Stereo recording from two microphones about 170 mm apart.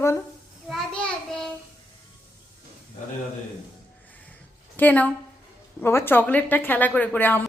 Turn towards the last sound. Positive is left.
turn(degrees=10)  # may be behind; listen again after turning